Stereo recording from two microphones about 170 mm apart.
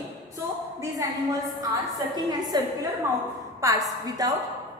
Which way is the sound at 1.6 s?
20° right (ahead or behind).